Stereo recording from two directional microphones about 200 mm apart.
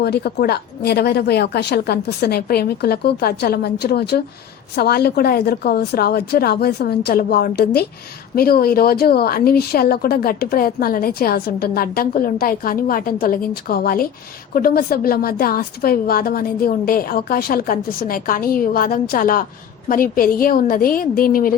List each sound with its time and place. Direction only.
0.0 s a woman's voice: 55° left (ahead or behind)